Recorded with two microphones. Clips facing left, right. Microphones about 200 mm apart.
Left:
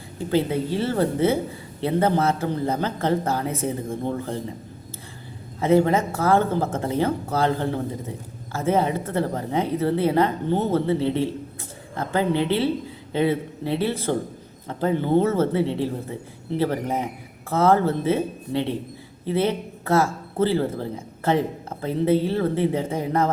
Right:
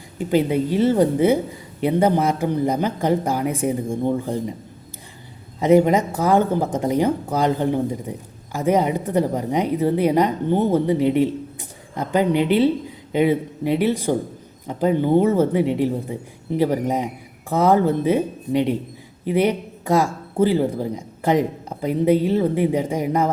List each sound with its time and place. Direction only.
0.2 s speech: 15° right (ahead or behind)
5.5 s a man's voice: 15° right (ahead or behind)